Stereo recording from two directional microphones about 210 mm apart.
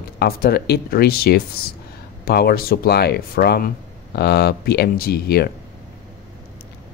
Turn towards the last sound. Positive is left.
turn(degrees=50)  # may be behind; listen again after turning